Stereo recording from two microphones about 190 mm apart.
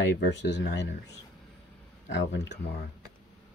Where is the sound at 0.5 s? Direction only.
65° left (ahead or behind).